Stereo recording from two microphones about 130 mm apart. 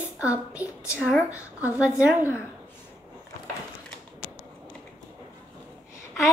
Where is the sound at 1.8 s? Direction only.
10° right (ahead or behind).